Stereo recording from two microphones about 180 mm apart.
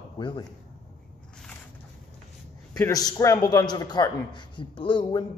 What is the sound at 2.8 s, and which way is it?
A man's voice, 20° left (ahead or behind).